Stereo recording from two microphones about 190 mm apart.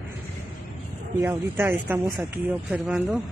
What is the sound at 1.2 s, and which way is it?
Speech, 10° right (ahead or behind).